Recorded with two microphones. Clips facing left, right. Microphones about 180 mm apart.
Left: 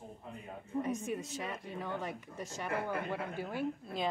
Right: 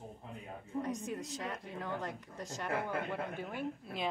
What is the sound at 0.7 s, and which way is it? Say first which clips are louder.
Speech: left 2 dB; 5° left (ahead or behind).